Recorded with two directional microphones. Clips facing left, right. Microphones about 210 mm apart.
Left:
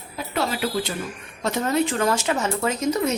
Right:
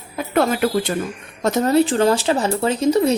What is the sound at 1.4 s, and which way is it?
Speech, 40° right (ahead or behind).